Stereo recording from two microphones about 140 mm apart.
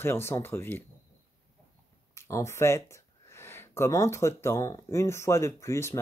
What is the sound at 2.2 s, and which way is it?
Speech, 20° left (ahead or behind).